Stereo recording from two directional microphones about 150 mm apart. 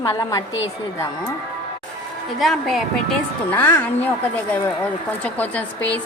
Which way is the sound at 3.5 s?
10° left (ahead or behind).